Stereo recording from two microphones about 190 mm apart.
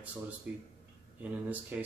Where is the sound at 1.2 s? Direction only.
10° right (ahead or behind).